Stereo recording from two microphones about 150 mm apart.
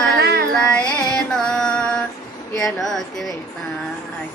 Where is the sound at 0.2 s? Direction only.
90° right.